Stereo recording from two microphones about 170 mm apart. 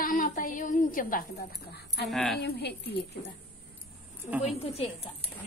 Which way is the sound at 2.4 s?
75° left (ahead or behind).